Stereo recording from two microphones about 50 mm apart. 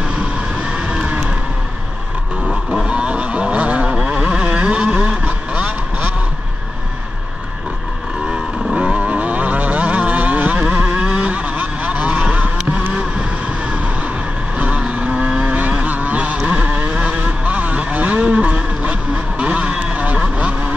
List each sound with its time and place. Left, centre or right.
2.4 s vehicle: centre
2.9 s vehicle: right
8.7 s vehicle: right
14.6 s vehicle: right